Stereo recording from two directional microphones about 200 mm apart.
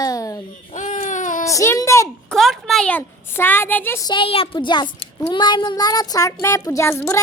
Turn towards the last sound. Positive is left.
turn(degrees=10)  # may be behind; listen again after turning